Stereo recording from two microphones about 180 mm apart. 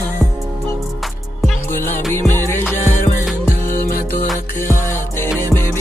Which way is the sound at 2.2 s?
15° left (ahead or behind).